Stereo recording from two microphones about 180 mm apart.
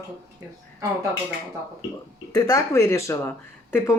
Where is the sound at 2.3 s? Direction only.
20° left (ahead or behind).